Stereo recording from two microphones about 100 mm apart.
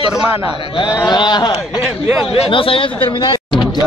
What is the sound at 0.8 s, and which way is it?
Speech, 30° left (ahead or behind).